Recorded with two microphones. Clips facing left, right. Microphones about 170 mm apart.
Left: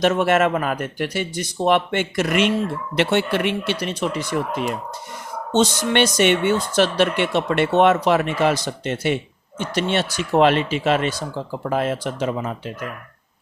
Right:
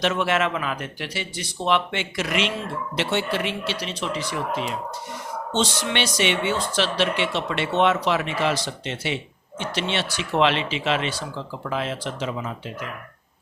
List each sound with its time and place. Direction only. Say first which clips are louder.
0.0 s speech: left 5 dB; 45° left (ahead or behind)